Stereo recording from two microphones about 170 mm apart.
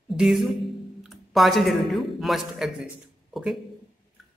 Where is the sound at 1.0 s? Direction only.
Centre (ahead or behind).